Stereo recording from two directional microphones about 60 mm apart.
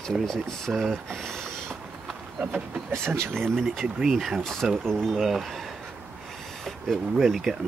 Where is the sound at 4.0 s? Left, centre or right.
Centre.